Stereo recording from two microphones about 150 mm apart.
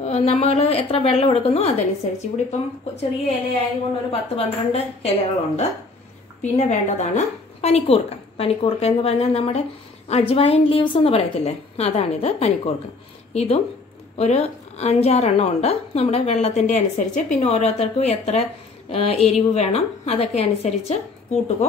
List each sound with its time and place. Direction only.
0.0 s a woman's voice: 45° left (ahead or behind)
6.4 s a woman's voice: 50° left (ahead or behind)